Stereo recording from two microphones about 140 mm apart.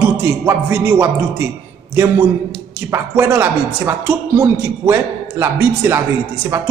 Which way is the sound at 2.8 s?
20° right (ahead or behind).